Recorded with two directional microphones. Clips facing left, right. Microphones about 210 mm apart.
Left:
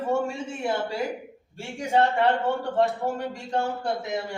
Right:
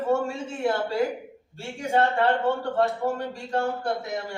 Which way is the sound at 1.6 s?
15° left (ahead or behind).